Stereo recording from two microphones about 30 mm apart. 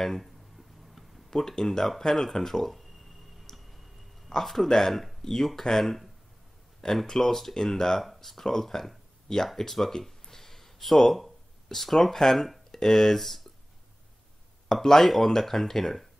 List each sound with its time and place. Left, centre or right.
0.2 s a sound: centre
1.3 s speech: centre
2.8 s a sound: centre
3.5 s tick: centre
4.3 s speech: centre
7.1 s speech: centre
14.7 s speech: centre